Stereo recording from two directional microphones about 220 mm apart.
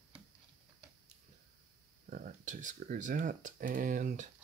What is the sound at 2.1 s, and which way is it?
Speech, 35° right (ahead or behind).